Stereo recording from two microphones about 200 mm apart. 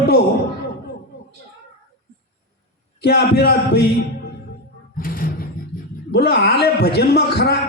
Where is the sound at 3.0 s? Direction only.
55° left (ahead or behind).